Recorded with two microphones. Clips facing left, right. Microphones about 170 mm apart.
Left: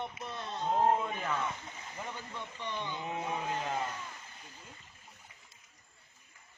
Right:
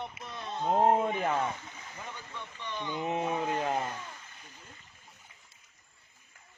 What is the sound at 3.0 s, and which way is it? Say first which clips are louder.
Speech: right 8 dB; 25° right (ahead or behind).